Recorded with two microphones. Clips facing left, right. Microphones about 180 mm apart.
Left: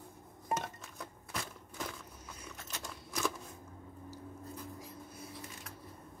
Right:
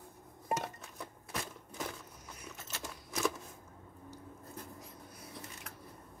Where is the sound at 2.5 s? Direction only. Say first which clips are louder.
Right 1 dB; 5° right (ahead or behind).